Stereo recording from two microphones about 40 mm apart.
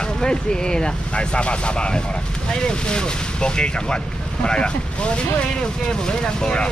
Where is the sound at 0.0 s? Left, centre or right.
Centre.